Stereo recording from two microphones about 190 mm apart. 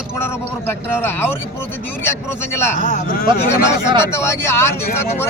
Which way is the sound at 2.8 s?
50° left (ahead or behind).